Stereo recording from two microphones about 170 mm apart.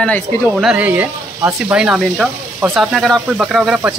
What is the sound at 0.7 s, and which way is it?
Speech, 10° right (ahead or behind).